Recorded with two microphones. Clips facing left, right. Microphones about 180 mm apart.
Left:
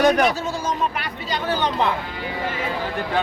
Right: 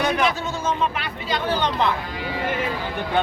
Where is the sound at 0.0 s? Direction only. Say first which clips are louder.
Left 4 dB; 40° left (ahead or behind).